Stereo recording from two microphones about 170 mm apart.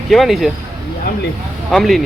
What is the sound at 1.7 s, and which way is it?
Speech, centre (ahead or behind).